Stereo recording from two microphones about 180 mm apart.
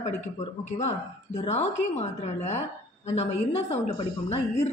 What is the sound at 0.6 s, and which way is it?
A woman's voice, 40° left (ahead or behind).